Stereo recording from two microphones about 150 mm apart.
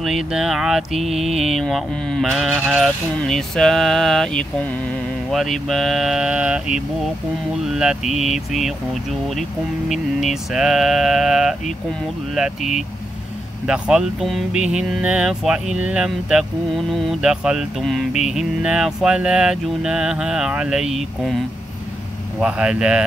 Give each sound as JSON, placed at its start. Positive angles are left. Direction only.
{"t": 0.0, "sound": "speech", "side_deg": -5}
{"t": 22.4, "sound": "speech", "side_deg": -5}